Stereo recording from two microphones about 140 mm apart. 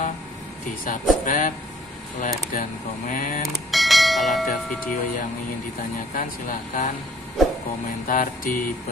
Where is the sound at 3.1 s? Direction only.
75° left (ahead or behind).